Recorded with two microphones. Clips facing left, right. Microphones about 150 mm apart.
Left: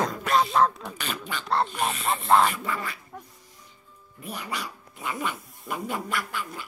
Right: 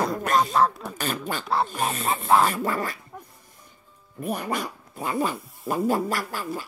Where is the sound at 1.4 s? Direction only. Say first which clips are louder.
Left 1 dB; 5° right (ahead or behind).